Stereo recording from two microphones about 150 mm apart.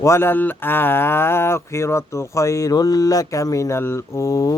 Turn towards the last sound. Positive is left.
turn(degrees=20)  # may be behind; listen again after turning